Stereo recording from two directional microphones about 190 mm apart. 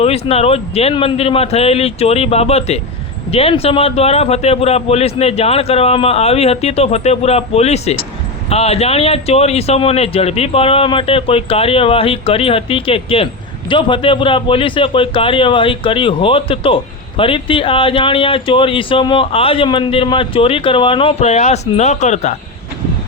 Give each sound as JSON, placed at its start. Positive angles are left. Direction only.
{"t": 0.0, "sound": "a man's voice", "side_deg": 30}